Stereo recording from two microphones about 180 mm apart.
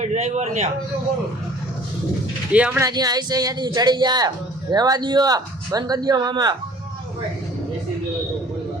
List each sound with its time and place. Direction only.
0.0 s a man's voice: 40° right (ahead or behind)
2.5 s speech: 5° right (ahead or behind)
2.8 s a man's voice: 20° right (ahead or behind)